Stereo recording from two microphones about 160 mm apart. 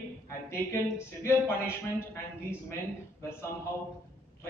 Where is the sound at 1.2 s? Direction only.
15° left (ahead or behind).